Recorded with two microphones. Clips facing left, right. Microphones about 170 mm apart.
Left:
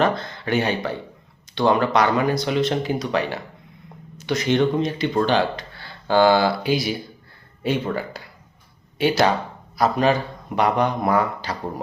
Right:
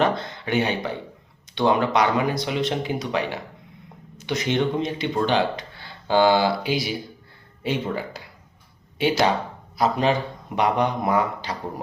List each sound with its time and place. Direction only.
0.0 s speech: 20° right (ahead or behind)